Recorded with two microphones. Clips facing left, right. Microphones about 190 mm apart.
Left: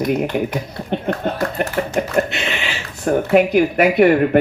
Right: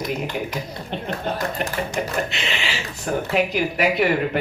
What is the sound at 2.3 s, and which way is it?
Speech, 55° left (ahead or behind).